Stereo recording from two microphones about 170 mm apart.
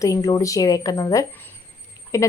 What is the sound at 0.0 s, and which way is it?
A woman's voice, 20° left (ahead or behind).